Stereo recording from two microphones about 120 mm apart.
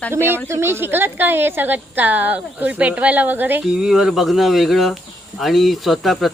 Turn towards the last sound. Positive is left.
turn(degrees=0)  # may be behind; listen again after turning